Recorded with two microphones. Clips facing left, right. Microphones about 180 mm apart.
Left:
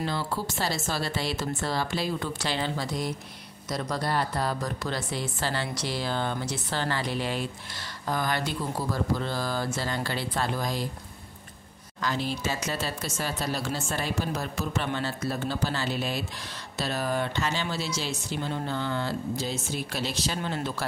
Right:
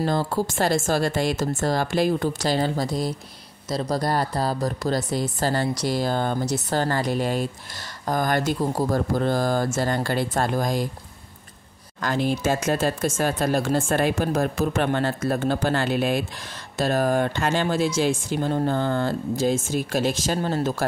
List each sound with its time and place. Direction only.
0.0 s speech: 45° right (ahead or behind)
12.0 s speech: 50° right (ahead or behind)